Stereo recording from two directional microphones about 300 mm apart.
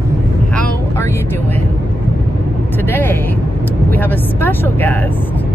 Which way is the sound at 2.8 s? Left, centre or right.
Centre.